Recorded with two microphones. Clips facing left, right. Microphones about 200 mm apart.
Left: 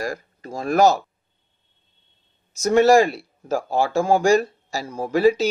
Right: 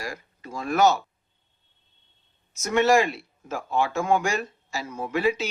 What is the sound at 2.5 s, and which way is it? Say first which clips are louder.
Speech: left 6 dB; 35° left (ahead or behind).